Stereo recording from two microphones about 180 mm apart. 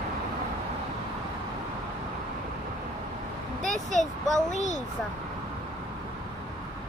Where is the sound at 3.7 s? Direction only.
40° left (ahead or behind).